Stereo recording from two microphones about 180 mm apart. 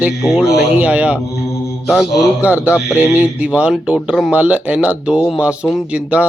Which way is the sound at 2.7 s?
10° left (ahead or behind).